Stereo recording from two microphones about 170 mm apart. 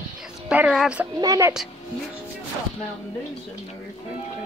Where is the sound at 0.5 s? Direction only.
5° right (ahead or behind).